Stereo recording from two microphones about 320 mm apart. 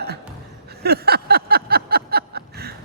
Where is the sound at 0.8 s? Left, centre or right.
Right.